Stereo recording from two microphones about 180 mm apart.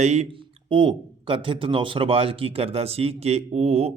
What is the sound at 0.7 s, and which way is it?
Speech, 25° right (ahead or behind).